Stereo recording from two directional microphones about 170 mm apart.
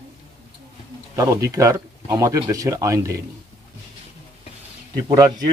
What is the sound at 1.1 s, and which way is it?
Speech, 20° right (ahead or behind).